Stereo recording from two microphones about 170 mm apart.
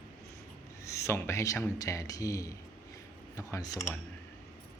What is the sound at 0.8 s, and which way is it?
Speech, 15° left (ahead or behind).